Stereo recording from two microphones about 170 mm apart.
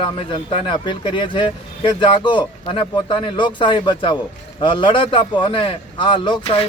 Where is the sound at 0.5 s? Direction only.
25° left (ahead or behind).